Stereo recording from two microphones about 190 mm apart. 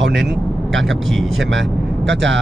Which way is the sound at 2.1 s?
75° right (ahead or behind).